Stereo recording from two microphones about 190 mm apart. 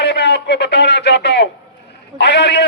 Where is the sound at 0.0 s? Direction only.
60° left (ahead or behind).